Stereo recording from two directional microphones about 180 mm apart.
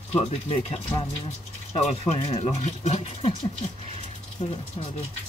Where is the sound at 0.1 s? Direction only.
35° left (ahead or behind).